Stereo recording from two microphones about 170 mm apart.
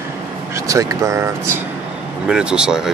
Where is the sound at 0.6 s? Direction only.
20° right (ahead or behind).